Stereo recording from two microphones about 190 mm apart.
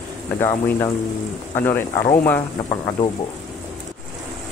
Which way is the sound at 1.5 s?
10° left (ahead or behind).